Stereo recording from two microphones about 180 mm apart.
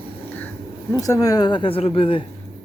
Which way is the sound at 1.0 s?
20° left (ahead or behind).